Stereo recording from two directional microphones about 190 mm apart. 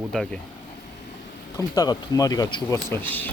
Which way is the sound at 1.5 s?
20° left (ahead or behind).